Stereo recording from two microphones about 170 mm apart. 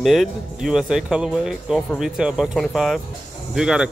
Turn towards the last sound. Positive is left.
turn(degrees=-5)  # may be behind; listen again after turning